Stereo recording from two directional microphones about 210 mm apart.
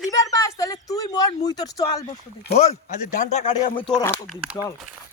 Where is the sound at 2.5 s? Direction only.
35° left (ahead or behind).